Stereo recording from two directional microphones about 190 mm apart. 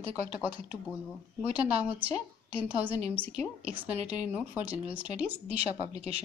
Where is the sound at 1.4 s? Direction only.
10° right (ahead or behind).